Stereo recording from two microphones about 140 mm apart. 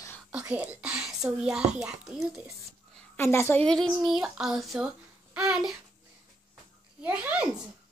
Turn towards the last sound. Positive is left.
turn(degrees=-10)  # may be behind; listen again after turning